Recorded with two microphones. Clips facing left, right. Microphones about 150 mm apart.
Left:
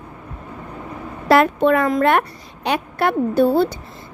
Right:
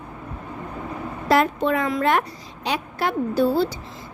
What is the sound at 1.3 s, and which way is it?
A woman's voice, 65° left (ahead or behind).